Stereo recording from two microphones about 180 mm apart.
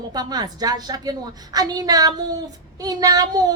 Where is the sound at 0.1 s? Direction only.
20° right (ahead or behind).